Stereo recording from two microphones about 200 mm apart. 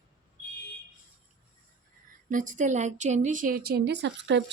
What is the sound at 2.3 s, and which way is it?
A woman's voice, 40° right (ahead or behind).